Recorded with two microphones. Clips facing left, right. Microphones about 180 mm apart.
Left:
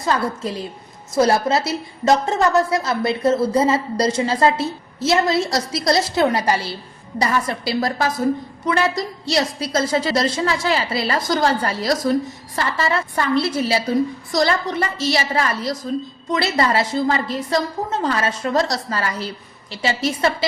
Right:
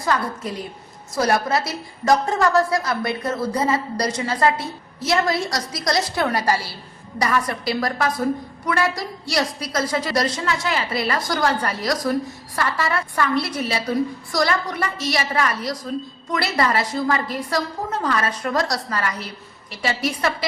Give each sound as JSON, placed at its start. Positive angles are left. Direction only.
{"t": 0.0, "sound": "a woman's voice", "side_deg": 25}